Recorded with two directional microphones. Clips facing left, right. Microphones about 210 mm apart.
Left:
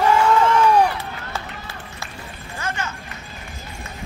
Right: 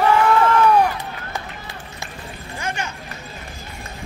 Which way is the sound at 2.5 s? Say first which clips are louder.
Even; 15° right (ahead or behind).